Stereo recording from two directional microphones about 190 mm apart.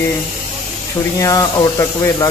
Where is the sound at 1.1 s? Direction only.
15° left (ahead or behind).